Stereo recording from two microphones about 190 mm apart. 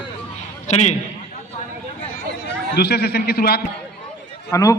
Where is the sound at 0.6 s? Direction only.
40° left (ahead or behind).